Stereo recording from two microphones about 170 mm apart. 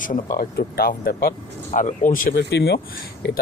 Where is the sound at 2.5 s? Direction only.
80° left.